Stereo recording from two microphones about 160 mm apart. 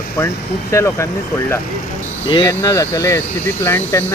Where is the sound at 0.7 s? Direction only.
15° left (ahead or behind).